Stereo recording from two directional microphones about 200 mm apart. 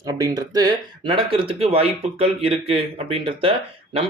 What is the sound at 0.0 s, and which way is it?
Speech, 20° right (ahead or behind).